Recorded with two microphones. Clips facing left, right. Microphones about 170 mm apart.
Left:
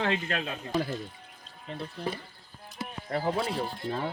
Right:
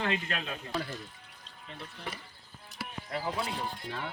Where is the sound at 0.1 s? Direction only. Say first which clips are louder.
Left 3 dB; 35° left (ahead or behind).